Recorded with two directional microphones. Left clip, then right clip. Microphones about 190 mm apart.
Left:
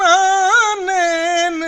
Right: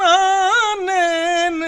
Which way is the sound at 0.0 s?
35° right (ahead or behind).